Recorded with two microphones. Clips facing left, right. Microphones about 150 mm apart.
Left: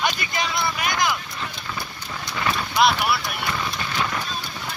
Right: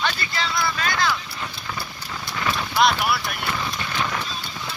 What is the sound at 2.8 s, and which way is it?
Speech, centre (ahead or behind).